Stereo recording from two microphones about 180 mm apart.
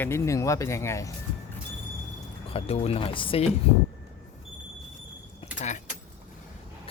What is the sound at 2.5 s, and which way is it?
Speech, 35° left (ahead or behind).